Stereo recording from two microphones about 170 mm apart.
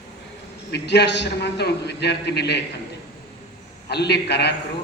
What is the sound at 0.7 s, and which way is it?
A man's voice, 85° left.